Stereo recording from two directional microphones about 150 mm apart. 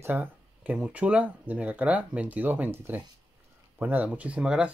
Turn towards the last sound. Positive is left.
turn(degrees=-5)  # may be behind; listen again after turning